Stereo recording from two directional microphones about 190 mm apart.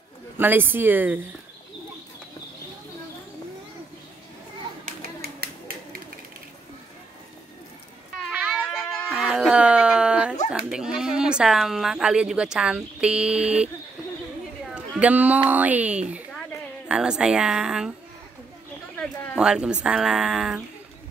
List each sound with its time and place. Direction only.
0.4 s speech: 10° right (ahead or behind)
4.8 s a sound: 55° right (ahead or behind)
8.3 s a sound: 5° right (ahead or behind)
10.5 s speech: 5° right (ahead or behind)
15.0 s speech: 5° right (ahead or behind)
19.3 s speech: 5° right (ahead or behind)